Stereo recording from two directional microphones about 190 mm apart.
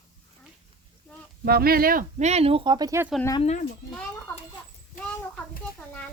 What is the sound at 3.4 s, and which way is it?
Speech, 35° left (ahead or behind).